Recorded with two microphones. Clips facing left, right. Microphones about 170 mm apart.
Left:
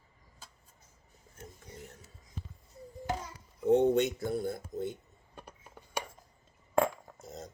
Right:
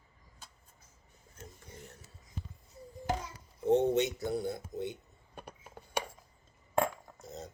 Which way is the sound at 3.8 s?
50° left (ahead or behind).